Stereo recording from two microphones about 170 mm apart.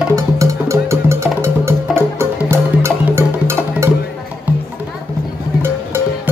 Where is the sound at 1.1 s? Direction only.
15° right (ahead or behind).